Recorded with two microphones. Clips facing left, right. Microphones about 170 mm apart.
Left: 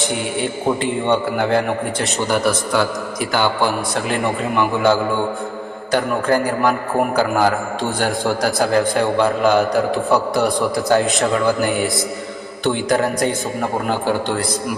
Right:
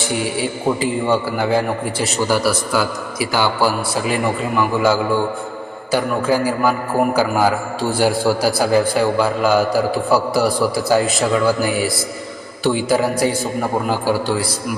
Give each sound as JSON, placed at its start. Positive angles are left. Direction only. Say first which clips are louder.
{"t": 0.3, "sound": "a man's voice", "louder": "even", "side_deg": -5}